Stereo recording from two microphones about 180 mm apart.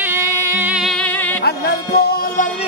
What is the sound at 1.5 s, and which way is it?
Music, 60° left (ahead or behind).